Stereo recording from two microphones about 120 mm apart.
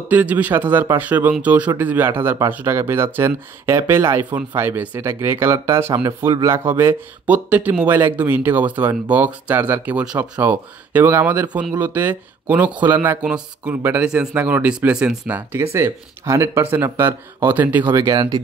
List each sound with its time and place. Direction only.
0.1 s speech: 10° right (ahead or behind)
17.9 s speech: 30° right (ahead or behind)